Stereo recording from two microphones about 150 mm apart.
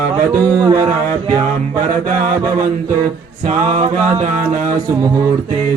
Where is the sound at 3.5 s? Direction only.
50° right (ahead or behind).